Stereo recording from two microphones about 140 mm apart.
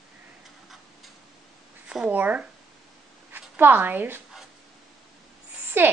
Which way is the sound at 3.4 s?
15° right (ahead or behind).